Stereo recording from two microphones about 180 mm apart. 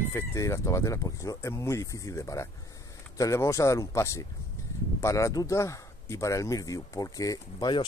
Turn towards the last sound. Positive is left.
turn(degrees=25)  # may be behind; listen again after turning